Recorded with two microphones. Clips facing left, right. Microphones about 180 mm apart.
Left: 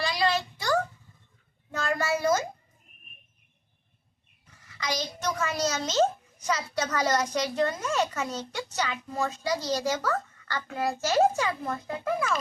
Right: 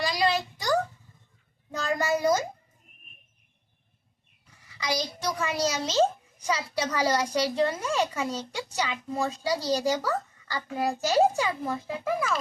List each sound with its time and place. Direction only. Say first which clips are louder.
0.0 s a sound: right 1 dB; 15° right (ahead or behind)
1.7 s a child's voice: right 1 dB; 15° right (ahead or behind)
4.8 s a child's voice: right 1 dB; 10° right (ahead or behind)